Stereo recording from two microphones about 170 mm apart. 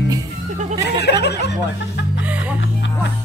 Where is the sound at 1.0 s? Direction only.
75° left (ahead or behind).